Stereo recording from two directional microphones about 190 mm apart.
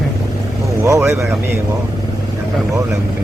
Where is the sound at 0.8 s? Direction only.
15° right (ahead or behind).